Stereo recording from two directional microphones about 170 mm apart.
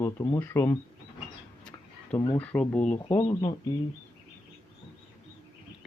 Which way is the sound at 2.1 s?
20° left (ahead or behind).